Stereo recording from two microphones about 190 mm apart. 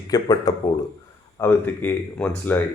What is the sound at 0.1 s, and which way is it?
Speech, 20° left (ahead or behind).